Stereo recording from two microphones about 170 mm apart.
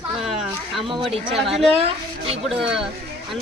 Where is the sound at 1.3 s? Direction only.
Centre (ahead or behind).